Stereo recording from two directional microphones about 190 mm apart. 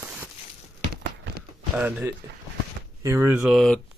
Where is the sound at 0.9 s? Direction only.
55° right (ahead or behind).